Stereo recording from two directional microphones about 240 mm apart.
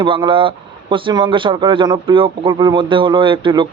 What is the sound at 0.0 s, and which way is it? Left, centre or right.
A man's voice, right.